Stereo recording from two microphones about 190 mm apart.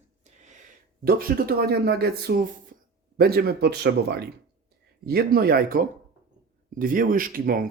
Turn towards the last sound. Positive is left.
turn(degrees=-50)  # may be behind; listen again after turning